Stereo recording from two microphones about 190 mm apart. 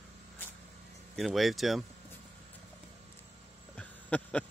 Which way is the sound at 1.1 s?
Centre (ahead or behind).